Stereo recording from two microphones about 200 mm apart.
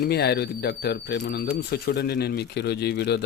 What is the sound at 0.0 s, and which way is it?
Speech, 55° left (ahead or behind).